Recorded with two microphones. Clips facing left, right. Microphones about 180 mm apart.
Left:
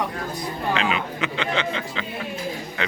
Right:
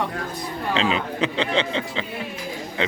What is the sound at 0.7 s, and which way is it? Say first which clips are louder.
Speech: right 3 dB; 30° right (ahead or behind).